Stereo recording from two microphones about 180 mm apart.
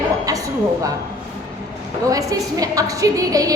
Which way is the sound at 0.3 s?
20° right (ahead or behind).